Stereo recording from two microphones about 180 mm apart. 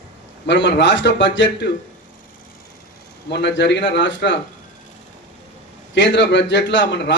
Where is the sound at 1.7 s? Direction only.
50° left (ahead or behind).